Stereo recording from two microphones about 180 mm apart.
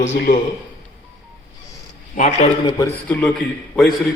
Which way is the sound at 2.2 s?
40° left (ahead or behind).